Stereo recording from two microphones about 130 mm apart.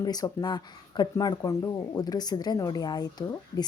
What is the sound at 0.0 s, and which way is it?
Speech, 30° left (ahead or behind).